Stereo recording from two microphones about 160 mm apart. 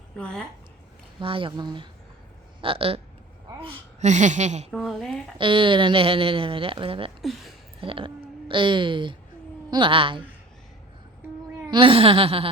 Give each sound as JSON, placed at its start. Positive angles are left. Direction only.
{"t": 1.2, "sound": "a woman's voice", "side_deg": -35}
{"t": 4.1, "sound": "speech", "side_deg": -50}
{"t": 4.7, "sound": "speech", "side_deg": 0}
{"t": 5.4, "sound": "speech", "side_deg": -30}
{"t": 7.2, "sound": "speech", "side_deg": 0}
{"t": 7.8, "sound": "speech", "side_deg": -35}
{"t": 11.7, "sound": "speech", "side_deg": -35}